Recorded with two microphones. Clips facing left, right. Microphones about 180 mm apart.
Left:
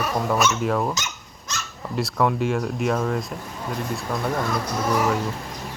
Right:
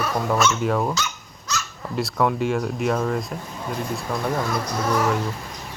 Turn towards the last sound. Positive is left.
turn(degrees=5)  # may be behind; listen again after turning